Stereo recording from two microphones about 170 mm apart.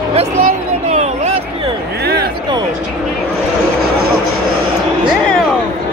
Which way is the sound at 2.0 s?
65° right (ahead or behind).